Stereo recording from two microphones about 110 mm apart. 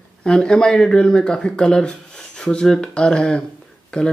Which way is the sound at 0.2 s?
5° left (ahead or behind).